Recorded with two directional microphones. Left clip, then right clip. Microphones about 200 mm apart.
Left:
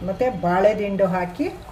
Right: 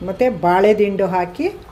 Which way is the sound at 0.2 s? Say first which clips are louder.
Right 5 dB; 40° right (ahead or behind).